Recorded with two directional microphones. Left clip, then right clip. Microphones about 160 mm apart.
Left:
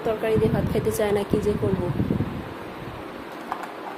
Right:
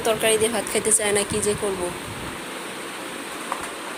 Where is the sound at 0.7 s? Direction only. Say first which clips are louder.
Right 1 dB; 20° left (ahead or behind).